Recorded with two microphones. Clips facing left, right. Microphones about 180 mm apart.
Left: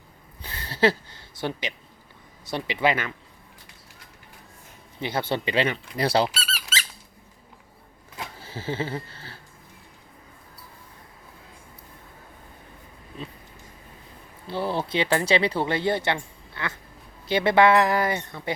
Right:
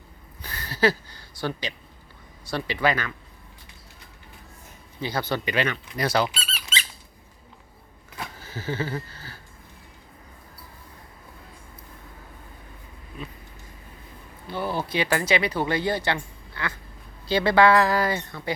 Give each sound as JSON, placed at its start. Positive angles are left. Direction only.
{"t": 0.4, "sound": "a sound", "side_deg": 25}
{"t": 2.4, "sound": "speech", "side_deg": 20}
{"t": 4.9, "sound": "speech", "side_deg": 25}
{"t": 6.2, "sound": "squeak", "side_deg": 5}
{"t": 8.4, "sound": "a sound", "side_deg": 30}
{"t": 14.4, "sound": "speech", "side_deg": 30}